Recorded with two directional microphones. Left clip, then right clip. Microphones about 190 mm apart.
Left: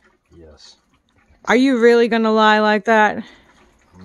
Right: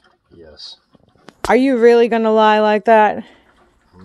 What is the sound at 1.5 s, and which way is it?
Speech, 10° left (ahead or behind).